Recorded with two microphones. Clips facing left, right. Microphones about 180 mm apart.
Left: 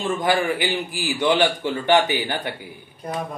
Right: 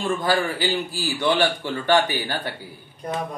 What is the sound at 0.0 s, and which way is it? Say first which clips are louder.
A man's voice: left 1 dB; 20° left (ahead or behind).